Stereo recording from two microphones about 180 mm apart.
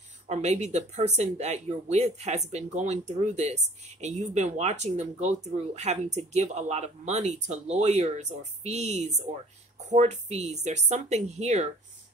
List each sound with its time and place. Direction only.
0.3 s speech: 40° right (ahead or behind)